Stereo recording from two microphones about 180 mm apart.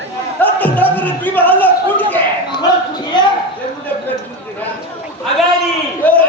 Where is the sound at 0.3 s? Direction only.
10° left (ahead or behind).